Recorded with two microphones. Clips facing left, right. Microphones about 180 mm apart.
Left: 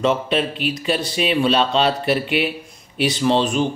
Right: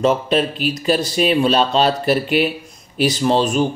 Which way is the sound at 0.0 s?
40° right (ahead or behind).